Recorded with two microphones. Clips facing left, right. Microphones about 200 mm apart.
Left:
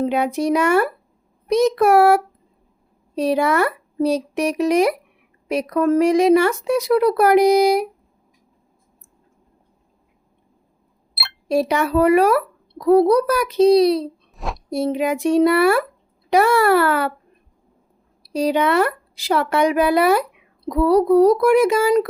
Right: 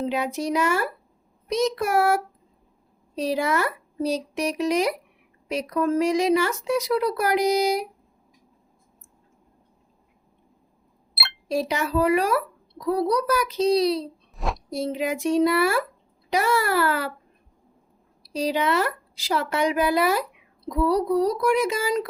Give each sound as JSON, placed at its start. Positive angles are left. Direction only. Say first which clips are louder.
{"t": 0.0, "sound": "speech", "louder": "left 6 dB", "side_deg": 60}
{"t": 11.4, "sound": "speech", "louder": "left 6 dB", "side_deg": 60}
{"t": 14.3, "sound": "a sound", "louder": "right 1 dB", "side_deg": 0}
{"t": 14.7, "sound": "speech", "louder": "left 7 dB", "side_deg": 60}
{"t": 18.2, "sound": "speech", "louder": "left 6 dB", "side_deg": 55}